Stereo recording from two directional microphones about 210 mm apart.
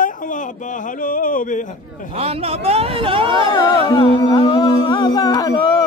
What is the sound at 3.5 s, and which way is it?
Music, 15° left (ahead or behind).